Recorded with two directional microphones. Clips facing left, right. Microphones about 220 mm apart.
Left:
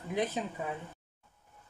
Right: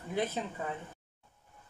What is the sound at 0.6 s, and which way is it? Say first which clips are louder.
Speech: even; 10° left (ahead or behind).